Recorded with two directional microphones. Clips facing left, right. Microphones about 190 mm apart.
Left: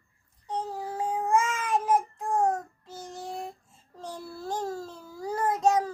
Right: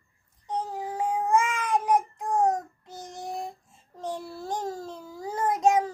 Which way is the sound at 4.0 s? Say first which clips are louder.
Right 4 dB; 20° right (ahead or behind).